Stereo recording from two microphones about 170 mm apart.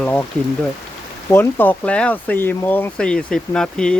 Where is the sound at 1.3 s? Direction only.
10° left (ahead or behind).